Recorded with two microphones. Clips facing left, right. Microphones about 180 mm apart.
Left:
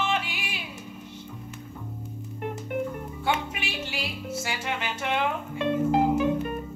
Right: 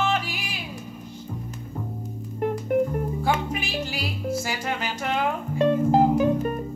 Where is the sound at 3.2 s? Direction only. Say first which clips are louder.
Left 1 dB; 40° right (ahead or behind).